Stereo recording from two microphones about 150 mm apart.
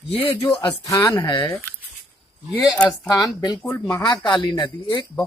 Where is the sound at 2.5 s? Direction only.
5° left (ahead or behind).